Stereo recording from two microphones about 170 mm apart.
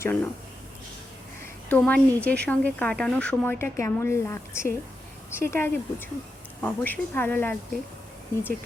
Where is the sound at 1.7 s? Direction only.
10° left (ahead or behind).